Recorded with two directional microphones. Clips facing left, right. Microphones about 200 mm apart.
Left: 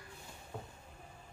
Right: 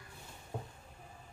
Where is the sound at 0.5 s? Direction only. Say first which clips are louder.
Right 3 dB; 20° right (ahead or behind).